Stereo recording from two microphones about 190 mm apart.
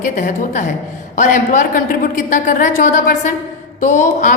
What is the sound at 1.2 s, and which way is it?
A woman's voice, 40° left (ahead or behind).